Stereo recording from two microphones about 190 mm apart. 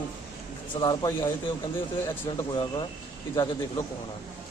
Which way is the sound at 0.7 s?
25° left (ahead or behind).